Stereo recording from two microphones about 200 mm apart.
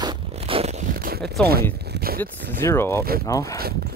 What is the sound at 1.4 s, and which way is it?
Speech, 50° right (ahead or behind).